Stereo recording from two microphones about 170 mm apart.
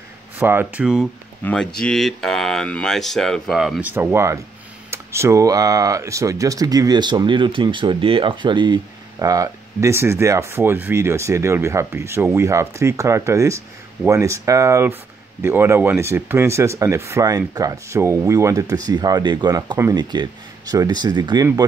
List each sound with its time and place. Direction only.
0.4 s speech: 10° right (ahead or behind)
1.4 s speech: 5° left (ahead or behind)
3.9 s speech: 15° right (ahead or behind)